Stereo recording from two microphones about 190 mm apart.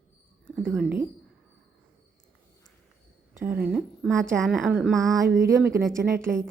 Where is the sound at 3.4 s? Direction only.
10° right (ahead or behind).